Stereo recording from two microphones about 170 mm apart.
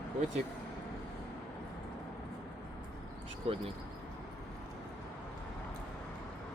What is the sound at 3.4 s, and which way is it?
Speech, 35° right (ahead or behind).